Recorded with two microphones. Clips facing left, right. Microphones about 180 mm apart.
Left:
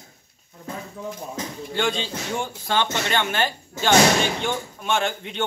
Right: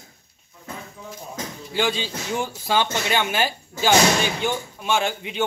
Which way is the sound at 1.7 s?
5° right (ahead or behind).